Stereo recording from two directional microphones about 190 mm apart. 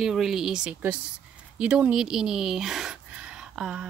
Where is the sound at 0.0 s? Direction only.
Centre (ahead or behind).